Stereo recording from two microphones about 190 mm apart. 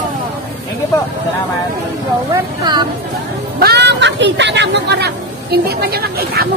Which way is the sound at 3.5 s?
60° right (ahead or behind).